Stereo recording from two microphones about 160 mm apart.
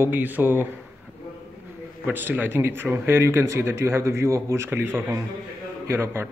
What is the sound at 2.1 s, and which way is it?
Speech, 10° right (ahead or behind).